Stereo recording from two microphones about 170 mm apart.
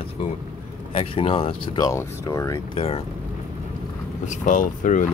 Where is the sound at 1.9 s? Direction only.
20° left (ahead or behind).